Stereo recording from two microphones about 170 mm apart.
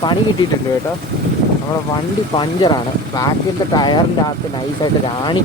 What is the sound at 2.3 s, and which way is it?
Speech, 25° left (ahead or behind).